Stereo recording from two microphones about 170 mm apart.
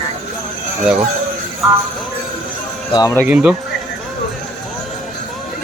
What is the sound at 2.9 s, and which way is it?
Speech, 25° left (ahead or behind).